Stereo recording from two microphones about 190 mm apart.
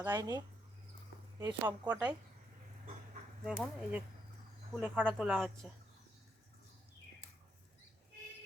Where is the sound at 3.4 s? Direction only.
5° right (ahead or behind).